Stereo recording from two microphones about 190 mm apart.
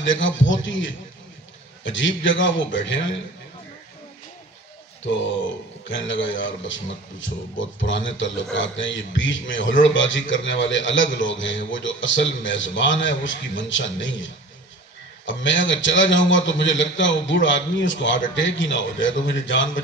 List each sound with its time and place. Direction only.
0.0 s a man's voice: 80° left
5.9 s a man's voice: 75° left (ahead or behind)